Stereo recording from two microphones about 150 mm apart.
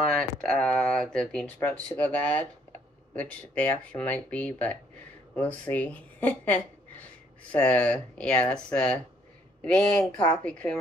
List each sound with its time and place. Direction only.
0.1 s speech: 5° left (ahead or behind)